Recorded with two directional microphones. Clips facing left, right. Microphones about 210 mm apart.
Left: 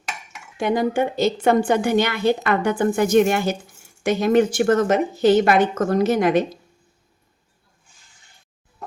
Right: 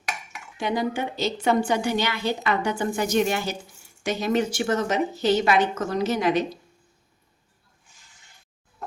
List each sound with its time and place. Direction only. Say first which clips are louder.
0.5 s a woman's voice: left 6 dB; 50° left (ahead or behind)